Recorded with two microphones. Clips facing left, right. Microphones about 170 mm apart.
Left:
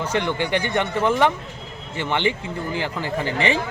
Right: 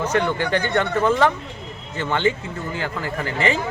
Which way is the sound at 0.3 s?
15° left (ahead or behind).